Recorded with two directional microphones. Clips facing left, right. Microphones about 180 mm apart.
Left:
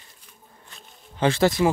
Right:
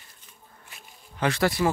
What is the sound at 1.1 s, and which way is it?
Speech, 25° left (ahead or behind).